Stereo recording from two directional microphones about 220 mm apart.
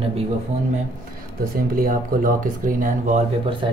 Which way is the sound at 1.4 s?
40° right (ahead or behind).